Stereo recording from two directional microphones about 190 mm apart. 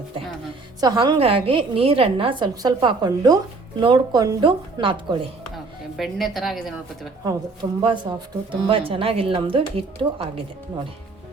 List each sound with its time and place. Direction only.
0.8 s a woman's voice: 20° right (ahead or behind)
6.0 s a woman's voice: centre (ahead or behind)
7.3 s a woman's voice: 25° right (ahead or behind)